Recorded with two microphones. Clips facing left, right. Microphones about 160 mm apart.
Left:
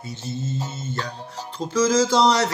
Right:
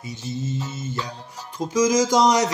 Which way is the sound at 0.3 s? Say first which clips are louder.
Right 1 dB; 15° right (ahead or behind).